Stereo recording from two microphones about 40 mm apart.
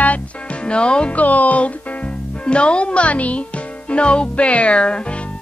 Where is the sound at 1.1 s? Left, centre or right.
Left.